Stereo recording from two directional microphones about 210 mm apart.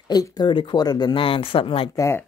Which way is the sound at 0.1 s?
20° left (ahead or behind).